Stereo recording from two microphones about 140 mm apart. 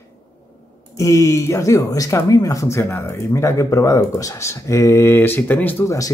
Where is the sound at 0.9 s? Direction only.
20° left (ahead or behind).